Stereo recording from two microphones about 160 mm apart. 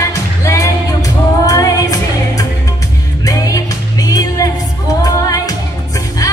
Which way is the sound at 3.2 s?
20° left (ahead or behind).